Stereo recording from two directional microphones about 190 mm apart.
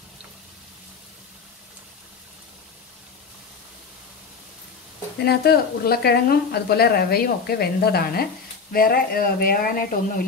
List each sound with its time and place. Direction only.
5.2 s speech: 55° left (ahead or behind)